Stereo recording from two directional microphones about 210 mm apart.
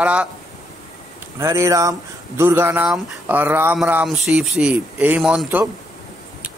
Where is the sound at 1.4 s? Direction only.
15° right (ahead or behind).